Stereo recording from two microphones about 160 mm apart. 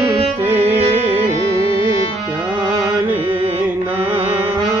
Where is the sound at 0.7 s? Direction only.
40° right (ahead or behind).